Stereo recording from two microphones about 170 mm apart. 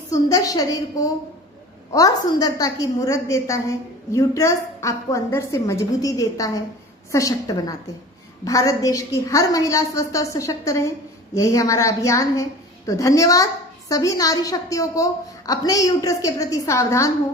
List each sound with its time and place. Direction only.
0.1 s a woman's voice: 20° left (ahead or behind)